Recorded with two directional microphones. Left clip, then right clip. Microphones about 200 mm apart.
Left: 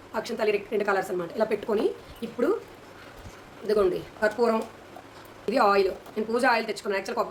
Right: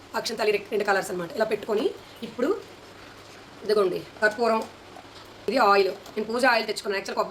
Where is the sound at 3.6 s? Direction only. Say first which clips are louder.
Right 1 dB; 5° left (ahead or behind).